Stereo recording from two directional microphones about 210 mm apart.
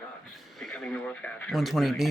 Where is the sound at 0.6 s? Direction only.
5° left (ahead or behind).